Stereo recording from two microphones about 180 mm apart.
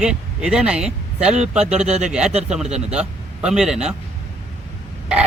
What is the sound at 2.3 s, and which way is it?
Speech, 35° right (ahead or behind).